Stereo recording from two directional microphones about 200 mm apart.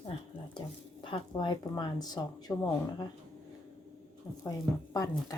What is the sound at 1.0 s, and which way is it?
Speech, 25° left (ahead or behind).